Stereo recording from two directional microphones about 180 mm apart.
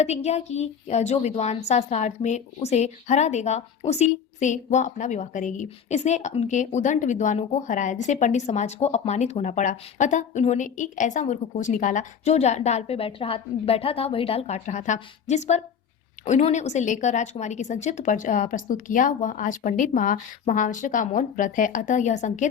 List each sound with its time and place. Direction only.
0.0 s a woman's voice: 35° left (ahead or behind)